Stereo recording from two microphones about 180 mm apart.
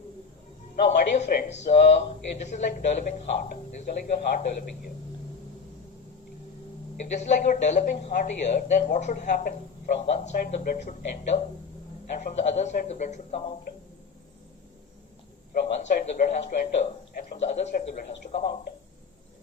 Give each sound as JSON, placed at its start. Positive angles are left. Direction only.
{"t": 1.0, "sound": "speech", "side_deg": 40}
{"t": 7.0, "sound": "speech", "side_deg": 40}
{"t": 15.6, "sound": "speech", "side_deg": 40}